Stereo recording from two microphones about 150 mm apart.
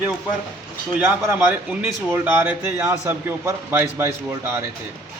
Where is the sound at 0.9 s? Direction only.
10° right (ahead or behind).